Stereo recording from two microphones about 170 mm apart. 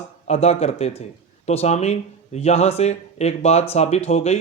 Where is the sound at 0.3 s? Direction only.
40° left (ahead or behind).